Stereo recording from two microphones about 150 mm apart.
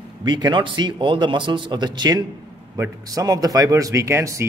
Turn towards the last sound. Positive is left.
turn(degrees=-20)  # may be behind; listen again after turning